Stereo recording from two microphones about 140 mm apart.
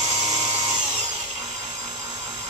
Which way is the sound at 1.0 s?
30° right (ahead or behind).